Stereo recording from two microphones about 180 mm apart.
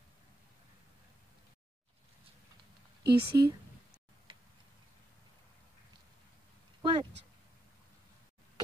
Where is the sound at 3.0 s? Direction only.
25° right (ahead or behind).